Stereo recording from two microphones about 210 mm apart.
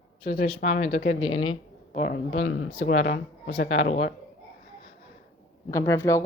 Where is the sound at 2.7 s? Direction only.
45° left (ahead or behind).